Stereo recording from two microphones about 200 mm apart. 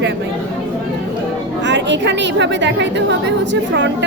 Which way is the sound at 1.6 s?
65° right (ahead or behind).